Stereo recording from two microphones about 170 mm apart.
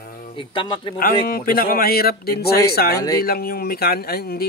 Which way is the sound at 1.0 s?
60° left (ahead or behind).